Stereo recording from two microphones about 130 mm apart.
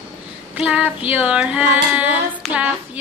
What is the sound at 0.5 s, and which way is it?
Child singing, 10° right (ahead or behind).